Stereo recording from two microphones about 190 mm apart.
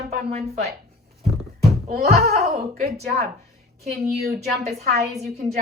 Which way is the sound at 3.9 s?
60° right (ahead or behind).